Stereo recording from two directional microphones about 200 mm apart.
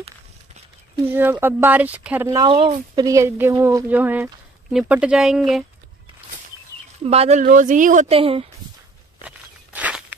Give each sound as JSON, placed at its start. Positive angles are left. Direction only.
{"t": 1.0, "sound": "speech", "side_deg": -10}
{"t": 7.1, "sound": "a woman's voice", "side_deg": -35}
{"t": 9.2, "sound": "walk", "side_deg": -5}